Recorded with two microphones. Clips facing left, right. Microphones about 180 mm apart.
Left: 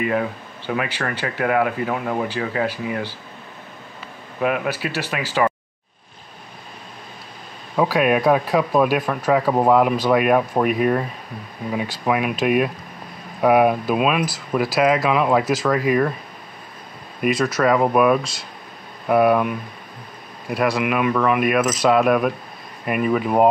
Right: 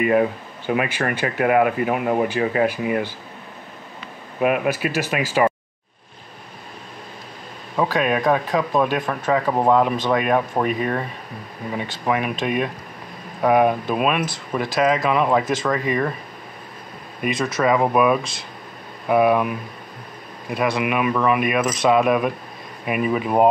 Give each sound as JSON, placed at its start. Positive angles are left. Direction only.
{"t": 0.1, "sound": "speech", "side_deg": -20}
{"t": 4.6, "sound": "speech", "side_deg": -45}
{"t": 7.7, "sound": "speech", "side_deg": 5}
{"t": 17.2, "sound": "speech", "side_deg": 5}